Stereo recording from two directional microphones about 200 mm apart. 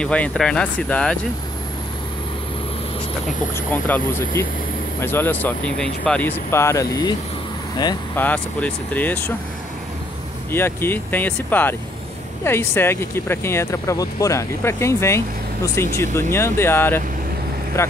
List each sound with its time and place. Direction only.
0.0 s speech: 5° left (ahead or behind)
3.7 s speech: 10° left (ahead or behind)
5.0 s speech: 10° left (ahead or behind)
8.2 s speech: 5° left (ahead or behind)
10.5 s speech: 10° left (ahead or behind)